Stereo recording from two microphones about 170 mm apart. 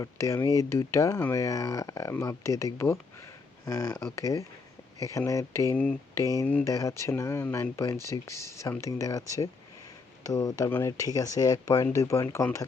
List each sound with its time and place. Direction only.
0.0 s speech: 15° left (ahead or behind)
10.2 s speech: 20° left (ahead or behind)